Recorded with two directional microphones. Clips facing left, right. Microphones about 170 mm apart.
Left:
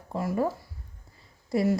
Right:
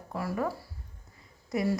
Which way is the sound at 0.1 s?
25° left (ahead or behind).